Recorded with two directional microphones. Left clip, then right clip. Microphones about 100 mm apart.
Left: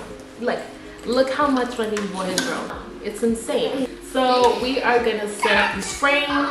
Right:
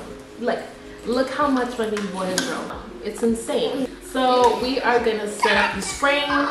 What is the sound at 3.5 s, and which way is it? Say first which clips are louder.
A woman's voice: left 1 dB; centre (ahead or behind).